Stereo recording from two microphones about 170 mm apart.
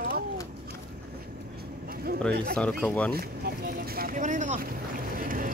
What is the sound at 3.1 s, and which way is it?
Boat, 65° right (ahead or behind).